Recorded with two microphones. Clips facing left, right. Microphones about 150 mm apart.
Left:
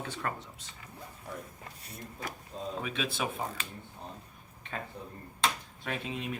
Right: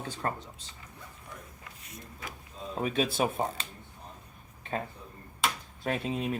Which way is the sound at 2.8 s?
40° right (ahead or behind).